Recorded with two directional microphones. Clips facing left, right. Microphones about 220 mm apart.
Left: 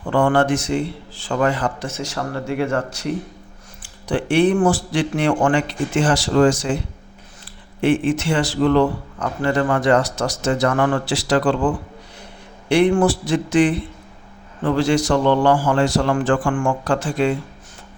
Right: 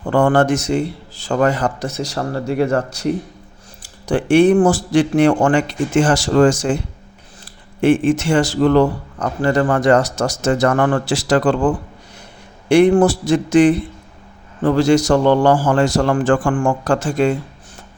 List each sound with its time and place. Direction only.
0.1 s a man's voice: 45° right (ahead or behind)
7.8 s a man's voice: 45° right (ahead or behind)